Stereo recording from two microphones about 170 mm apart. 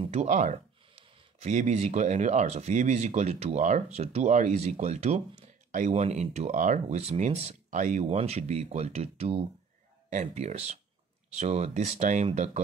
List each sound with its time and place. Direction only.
0.0 s speech: 40° right (ahead or behind)